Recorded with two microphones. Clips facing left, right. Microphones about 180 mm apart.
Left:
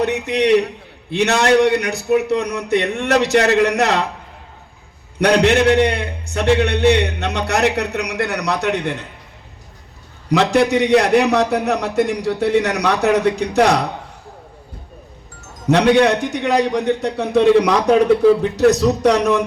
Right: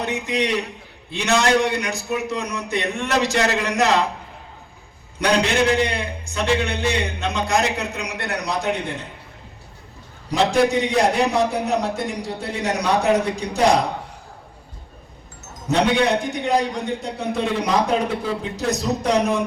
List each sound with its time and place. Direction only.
0.0 s a man's voice: 65° left (ahead or behind)
5.2 s a man's voice: 65° left (ahead or behind)
10.3 s a man's voice: 70° left (ahead or behind)
15.7 s a man's voice: 70° left (ahead or behind)